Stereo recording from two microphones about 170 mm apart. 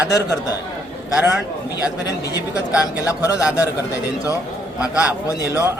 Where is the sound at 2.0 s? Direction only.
20° left (ahead or behind).